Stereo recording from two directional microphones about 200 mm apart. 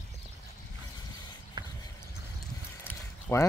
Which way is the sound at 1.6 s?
20° right (ahead or behind).